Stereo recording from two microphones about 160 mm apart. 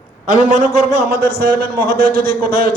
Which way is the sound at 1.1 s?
80° right.